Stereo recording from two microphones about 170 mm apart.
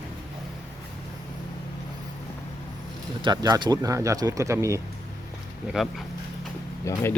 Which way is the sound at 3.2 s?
25° right (ahead or behind).